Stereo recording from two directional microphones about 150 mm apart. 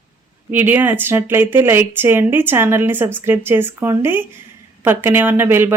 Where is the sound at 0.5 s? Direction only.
10° right (ahead or behind).